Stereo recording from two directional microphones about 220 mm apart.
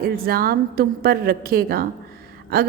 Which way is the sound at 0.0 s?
45° right (ahead or behind).